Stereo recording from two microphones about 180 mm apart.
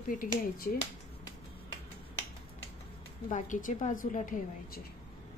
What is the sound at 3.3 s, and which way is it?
A woman's voice, 45° left (ahead or behind).